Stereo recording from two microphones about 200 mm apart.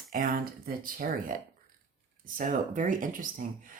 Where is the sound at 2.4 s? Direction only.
40° right (ahead or behind).